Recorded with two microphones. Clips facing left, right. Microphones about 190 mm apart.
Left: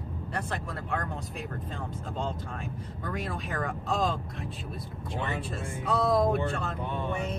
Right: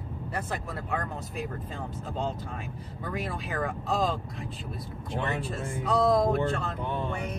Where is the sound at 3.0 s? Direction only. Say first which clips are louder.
Right 1 dB; centre (ahead or behind).